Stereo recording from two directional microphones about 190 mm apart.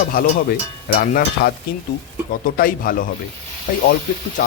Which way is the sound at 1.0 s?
50° left (ahead or behind).